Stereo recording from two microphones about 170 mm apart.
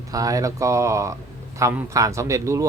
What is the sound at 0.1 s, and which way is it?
Speech, 20° right (ahead or behind).